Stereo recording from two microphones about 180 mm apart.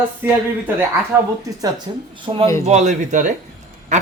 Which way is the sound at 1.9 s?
30° right (ahead or behind).